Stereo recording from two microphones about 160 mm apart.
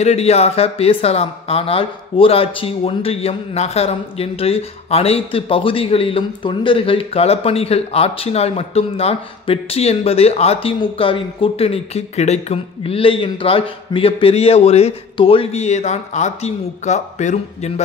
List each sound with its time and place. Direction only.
0.0 s speech: 40° left (ahead or behind)